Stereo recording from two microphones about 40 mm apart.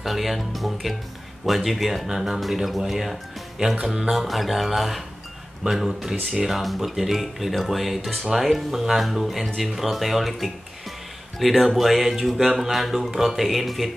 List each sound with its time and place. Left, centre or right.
0.0 s speech: centre
3.8 s speech: right
4.1 s speech: centre